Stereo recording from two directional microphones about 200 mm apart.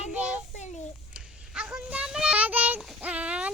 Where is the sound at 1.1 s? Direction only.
5° right (ahead or behind).